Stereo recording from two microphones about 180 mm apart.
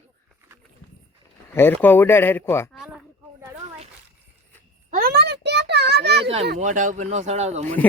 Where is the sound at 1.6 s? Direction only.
10° left (ahead or behind).